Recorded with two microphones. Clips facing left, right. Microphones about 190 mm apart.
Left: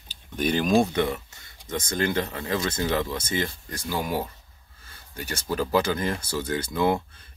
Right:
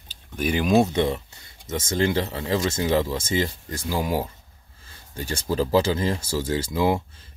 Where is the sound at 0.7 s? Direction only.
25° right (ahead or behind).